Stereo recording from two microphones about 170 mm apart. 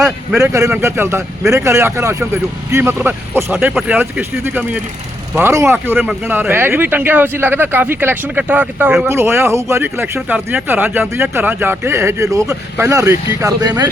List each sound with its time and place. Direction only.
0.0 s speech: 5° right (ahead or behind)
0.4 s speech: 15° right (ahead or behind)